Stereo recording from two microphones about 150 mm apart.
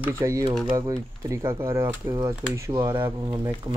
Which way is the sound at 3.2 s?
25° right (ahead or behind).